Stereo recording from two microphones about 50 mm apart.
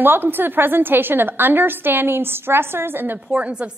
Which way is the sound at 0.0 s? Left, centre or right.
Right.